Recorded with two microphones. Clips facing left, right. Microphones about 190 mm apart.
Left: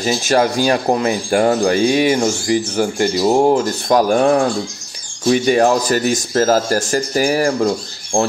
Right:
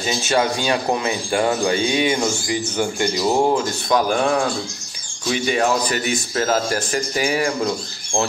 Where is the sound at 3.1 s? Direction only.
20° left (ahead or behind).